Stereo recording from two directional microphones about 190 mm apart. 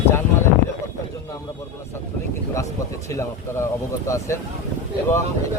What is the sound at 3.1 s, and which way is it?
Speech, 15° left (ahead or behind).